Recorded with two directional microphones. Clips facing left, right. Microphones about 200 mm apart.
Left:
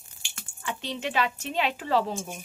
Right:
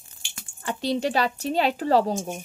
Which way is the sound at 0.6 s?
40° right (ahead or behind).